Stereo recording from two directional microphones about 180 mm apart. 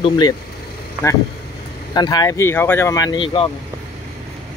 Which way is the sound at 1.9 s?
20° left (ahead or behind).